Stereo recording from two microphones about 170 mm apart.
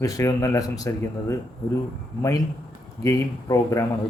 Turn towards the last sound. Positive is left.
turn(degrees=20)  # may be behind; listen again after turning